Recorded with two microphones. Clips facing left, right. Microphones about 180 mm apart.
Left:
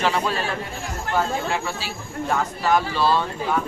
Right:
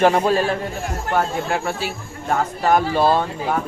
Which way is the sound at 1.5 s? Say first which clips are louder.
Right 4 dB; 55° right (ahead or behind).